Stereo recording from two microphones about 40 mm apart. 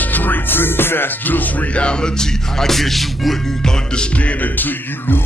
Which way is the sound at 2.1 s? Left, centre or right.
Centre.